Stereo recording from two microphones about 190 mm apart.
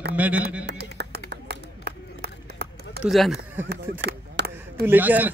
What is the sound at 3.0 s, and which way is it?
Speech, centre (ahead or behind).